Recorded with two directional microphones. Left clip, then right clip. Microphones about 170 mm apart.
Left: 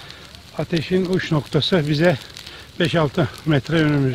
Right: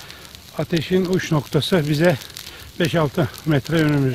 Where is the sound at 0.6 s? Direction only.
25° right (ahead or behind).